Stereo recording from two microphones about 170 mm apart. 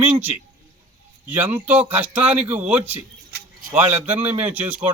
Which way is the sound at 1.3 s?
10° right (ahead or behind).